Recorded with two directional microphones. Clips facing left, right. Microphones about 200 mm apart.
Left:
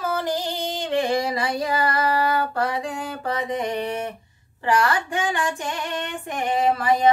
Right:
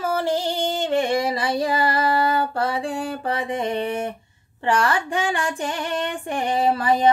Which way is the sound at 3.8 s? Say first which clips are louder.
Right 2 dB; 30° right (ahead or behind).